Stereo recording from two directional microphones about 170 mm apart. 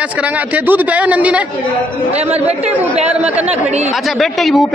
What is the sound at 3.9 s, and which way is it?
Speech, centre (ahead or behind).